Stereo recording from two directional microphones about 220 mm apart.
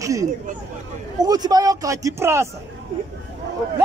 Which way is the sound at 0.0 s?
15° right (ahead or behind).